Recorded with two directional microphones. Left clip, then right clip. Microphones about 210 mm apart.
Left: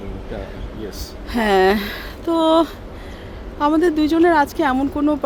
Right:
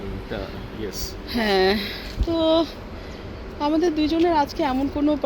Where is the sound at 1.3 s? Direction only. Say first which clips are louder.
Left 5 dB; 10° left (ahead or behind).